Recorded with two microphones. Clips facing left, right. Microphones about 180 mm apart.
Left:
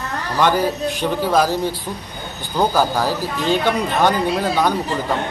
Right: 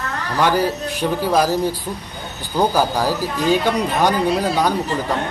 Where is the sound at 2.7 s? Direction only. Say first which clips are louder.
Even; 10° right (ahead or behind).